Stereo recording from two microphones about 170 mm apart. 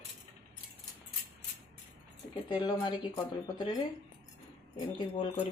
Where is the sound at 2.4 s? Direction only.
25° left (ahead or behind).